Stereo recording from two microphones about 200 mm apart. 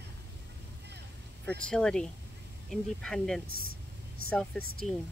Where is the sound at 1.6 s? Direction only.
5° left (ahead or behind).